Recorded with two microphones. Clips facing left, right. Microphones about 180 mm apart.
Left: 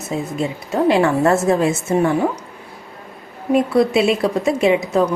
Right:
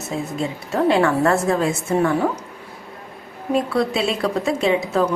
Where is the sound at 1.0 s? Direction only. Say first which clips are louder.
Left 2 dB; 25° left (ahead or behind).